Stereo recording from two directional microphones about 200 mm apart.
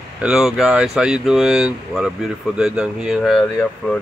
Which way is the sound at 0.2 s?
5° right (ahead or behind).